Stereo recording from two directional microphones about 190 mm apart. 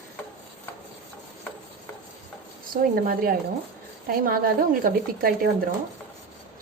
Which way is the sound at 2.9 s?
50° right (ahead or behind).